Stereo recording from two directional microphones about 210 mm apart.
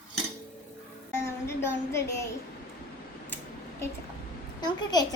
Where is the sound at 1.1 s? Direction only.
10° left (ahead or behind).